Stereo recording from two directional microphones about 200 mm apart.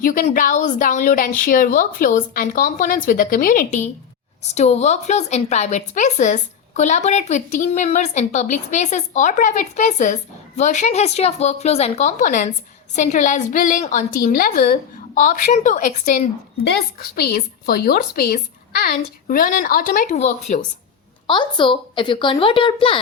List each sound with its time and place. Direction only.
0.0 s a woman's voice: 40° left (ahead or behind)
17.2 s a woman's voice: 50° left (ahead or behind)
21.2 s a woman's voice: 25° left (ahead or behind)